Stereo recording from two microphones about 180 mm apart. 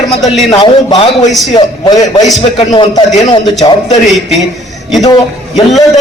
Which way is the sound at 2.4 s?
35° left (ahead or behind).